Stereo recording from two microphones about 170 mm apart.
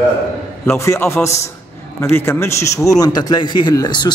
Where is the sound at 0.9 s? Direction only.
15° left (ahead or behind).